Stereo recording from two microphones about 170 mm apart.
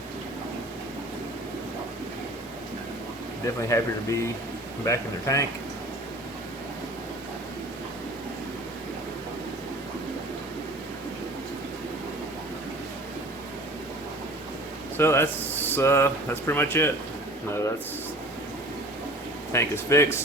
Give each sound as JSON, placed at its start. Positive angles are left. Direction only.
{"t": 3.4, "sound": "speech", "side_deg": 20}
{"t": 14.9, "sound": "speech", "side_deg": 15}
{"t": 19.5, "sound": "speech", "side_deg": 15}